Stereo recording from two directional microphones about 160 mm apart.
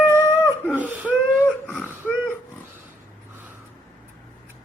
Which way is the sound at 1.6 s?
10° left (ahead or behind).